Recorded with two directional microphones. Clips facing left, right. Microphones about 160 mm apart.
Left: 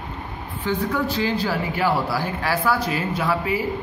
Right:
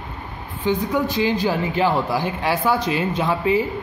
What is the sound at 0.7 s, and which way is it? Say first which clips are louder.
Speech: right 3 dB; 20° right (ahead or behind).